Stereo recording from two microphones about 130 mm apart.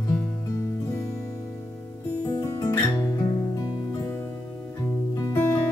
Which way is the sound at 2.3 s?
25° left (ahead or behind).